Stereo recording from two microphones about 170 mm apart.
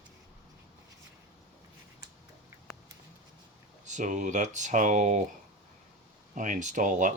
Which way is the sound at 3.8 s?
45° right (ahead or behind).